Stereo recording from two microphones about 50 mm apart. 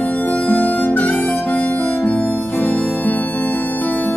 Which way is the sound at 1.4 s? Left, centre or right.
Left.